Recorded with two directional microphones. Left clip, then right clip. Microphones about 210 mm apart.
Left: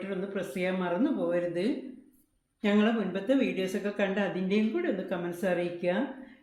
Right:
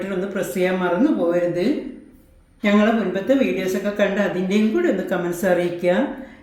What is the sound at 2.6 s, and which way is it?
Speech, 30° left (ahead or behind).